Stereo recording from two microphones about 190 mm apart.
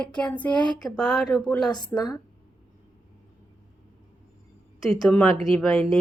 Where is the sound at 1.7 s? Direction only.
20° left (ahead or behind).